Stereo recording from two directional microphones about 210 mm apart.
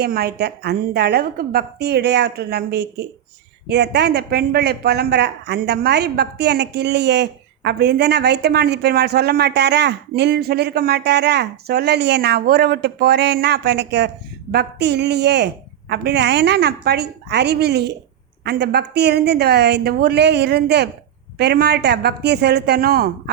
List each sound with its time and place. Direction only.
0.0 s speech: 50° right (ahead or behind)